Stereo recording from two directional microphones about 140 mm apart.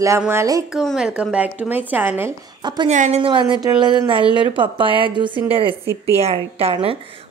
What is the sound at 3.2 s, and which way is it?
A woman's voice, 35° right (ahead or behind).